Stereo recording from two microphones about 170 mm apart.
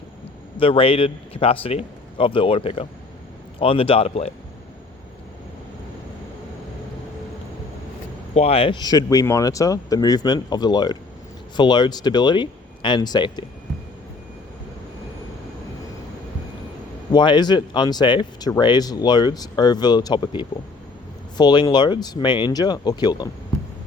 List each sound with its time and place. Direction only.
0.5 s a man's voice: 30° left (ahead or behind)
8.4 s speech: 35° left (ahead or behind)
17.1 s speech: 25° left (ahead or behind)